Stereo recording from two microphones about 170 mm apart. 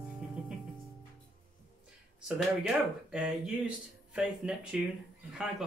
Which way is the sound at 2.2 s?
5° right (ahead or behind).